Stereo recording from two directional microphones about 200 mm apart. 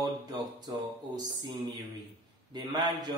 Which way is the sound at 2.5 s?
20° right (ahead or behind).